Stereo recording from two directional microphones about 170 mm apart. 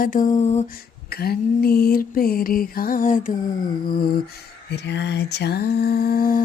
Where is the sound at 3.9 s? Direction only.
60° left (ahead or behind).